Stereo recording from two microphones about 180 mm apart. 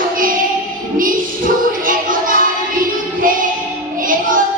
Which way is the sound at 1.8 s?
50° right (ahead or behind).